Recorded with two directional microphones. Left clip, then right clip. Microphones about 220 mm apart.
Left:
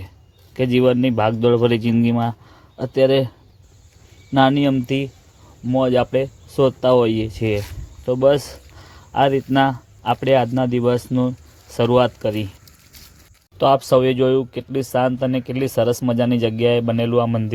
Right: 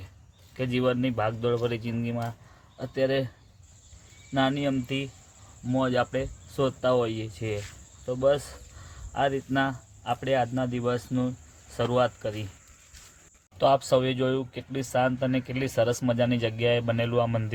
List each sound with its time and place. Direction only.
0.5 s speech: 30° left (ahead or behind)
4.4 s speech: 30° left (ahead or behind)
13.6 s speech: 30° left (ahead or behind)